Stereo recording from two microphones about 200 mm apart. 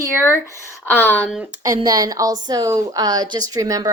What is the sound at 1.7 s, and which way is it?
A woman's voice, 20° right (ahead or behind).